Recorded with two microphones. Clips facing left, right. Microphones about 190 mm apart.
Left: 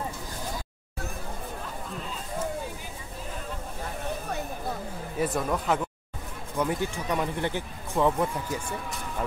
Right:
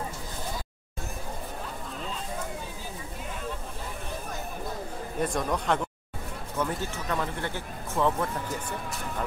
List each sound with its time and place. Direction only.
5.2 s speech: 5° left (ahead or behind)
6.6 s speech: 15° left (ahead or behind)